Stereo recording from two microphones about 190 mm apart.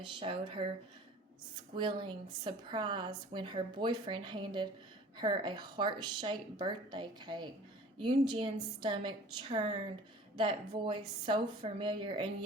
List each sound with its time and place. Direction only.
0.0 s a woman's voice: 25° right (ahead or behind)
1.7 s a woman's voice: 25° right (ahead or behind)